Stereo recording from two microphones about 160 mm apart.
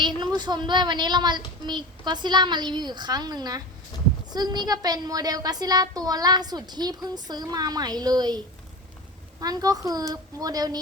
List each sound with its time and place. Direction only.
0.2 s a woman's voice: 25° right (ahead or behind)
9.4 s a woman's voice: 25° right (ahead or behind)